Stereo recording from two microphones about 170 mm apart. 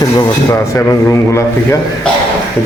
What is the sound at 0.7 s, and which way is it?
Speech, 15° left (ahead or behind).